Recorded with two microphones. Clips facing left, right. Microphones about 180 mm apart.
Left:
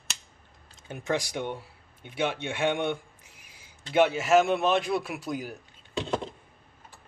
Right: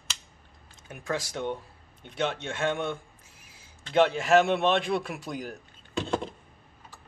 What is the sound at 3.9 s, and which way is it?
A man's voice, 5° left (ahead or behind).